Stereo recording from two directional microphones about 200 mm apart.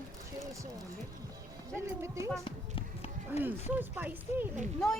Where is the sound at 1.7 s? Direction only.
15° right (ahead or behind).